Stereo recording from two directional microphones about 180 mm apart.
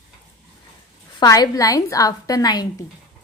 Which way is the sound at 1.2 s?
20° left (ahead or behind).